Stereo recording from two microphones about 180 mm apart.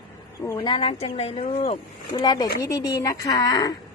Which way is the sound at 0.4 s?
25° left (ahead or behind).